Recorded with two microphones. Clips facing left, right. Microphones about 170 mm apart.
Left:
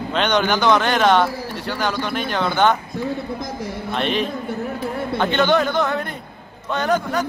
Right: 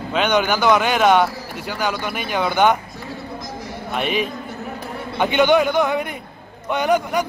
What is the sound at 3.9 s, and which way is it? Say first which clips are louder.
A man's voice: even; 10° right (ahead or behind).